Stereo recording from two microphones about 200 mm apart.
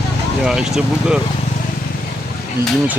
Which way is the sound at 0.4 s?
5° right (ahead or behind).